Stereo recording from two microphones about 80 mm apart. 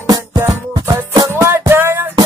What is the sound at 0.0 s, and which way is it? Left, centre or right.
Music, right.